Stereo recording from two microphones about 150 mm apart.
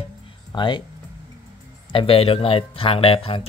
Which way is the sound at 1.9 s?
35° left (ahead or behind).